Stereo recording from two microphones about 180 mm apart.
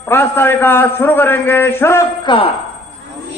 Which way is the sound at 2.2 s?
30° left (ahead or behind).